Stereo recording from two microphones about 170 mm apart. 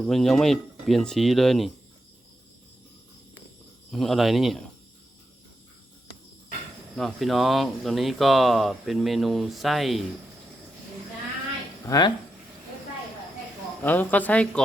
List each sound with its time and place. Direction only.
0.0 s speech: centre (ahead or behind)
3.9 s speech: centre (ahead or behind)
6.9 s speech: centre (ahead or behind)
11.9 s speech: 25° left (ahead or behind)
13.8 s speech: 10° left (ahead or behind)